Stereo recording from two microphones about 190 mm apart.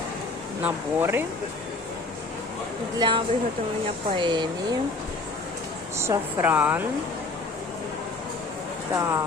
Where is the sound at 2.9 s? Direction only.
25° right (ahead or behind).